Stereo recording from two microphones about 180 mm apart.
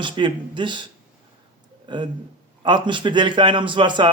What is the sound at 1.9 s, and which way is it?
Speech, 25° right (ahead or behind).